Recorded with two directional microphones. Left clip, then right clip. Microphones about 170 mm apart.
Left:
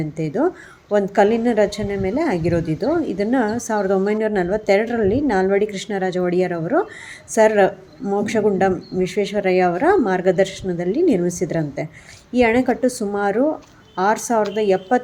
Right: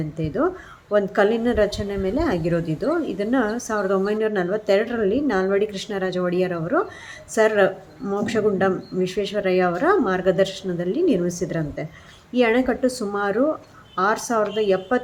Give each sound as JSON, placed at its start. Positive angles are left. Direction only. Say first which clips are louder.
{"t": 0.2, "sound": "a woman's voice", "louder": "left 2 dB", "side_deg": 20}